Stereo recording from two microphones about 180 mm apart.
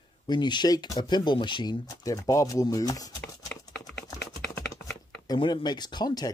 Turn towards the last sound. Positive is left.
turn(degrees=25)  # may be behind; listen again after turning